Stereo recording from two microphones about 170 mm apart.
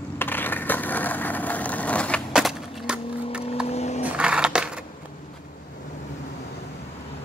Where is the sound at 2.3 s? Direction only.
5° right (ahead or behind).